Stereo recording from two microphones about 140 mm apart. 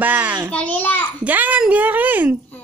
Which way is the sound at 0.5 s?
10° left (ahead or behind).